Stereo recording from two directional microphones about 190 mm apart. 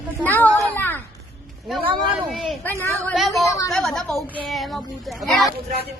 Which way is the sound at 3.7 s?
Centre (ahead or behind).